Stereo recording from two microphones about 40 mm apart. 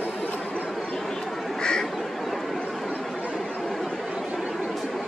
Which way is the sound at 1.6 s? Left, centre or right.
Centre.